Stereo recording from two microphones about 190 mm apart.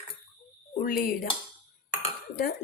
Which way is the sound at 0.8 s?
50° left (ahead or behind).